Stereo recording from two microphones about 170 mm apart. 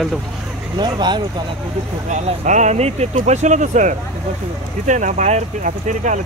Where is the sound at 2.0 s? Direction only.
45° right (ahead or behind).